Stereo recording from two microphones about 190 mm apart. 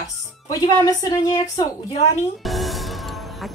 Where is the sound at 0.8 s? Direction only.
20° left (ahead or behind).